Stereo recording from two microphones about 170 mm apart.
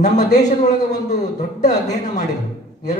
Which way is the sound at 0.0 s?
45° left (ahead or behind).